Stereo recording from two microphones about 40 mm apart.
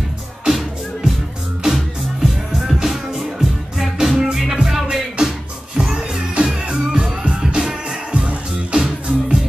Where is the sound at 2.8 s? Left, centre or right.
Centre; by 7.4 s right.